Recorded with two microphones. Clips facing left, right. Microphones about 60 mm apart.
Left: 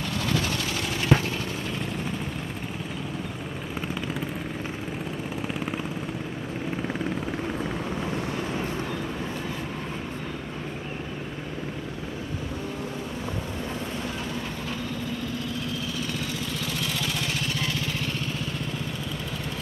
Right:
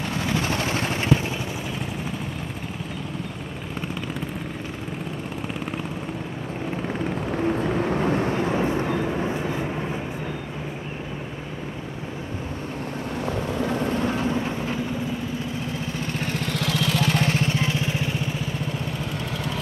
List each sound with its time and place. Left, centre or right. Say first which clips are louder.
0.3 s vehicle: right 4 dB; right
7.9 s vehicle: right 7 dB; right
13.6 s vehicle: right 8 dB; right
16.1 s vehicle: right 4 dB; right
17.0 s vehicle: right 7 dB; right